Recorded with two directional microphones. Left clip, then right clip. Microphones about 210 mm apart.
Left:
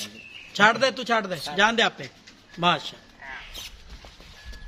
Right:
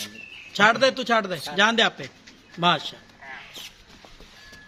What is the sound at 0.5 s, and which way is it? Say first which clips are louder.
A man's voice: right 1 dB; 10° right (ahead or behind).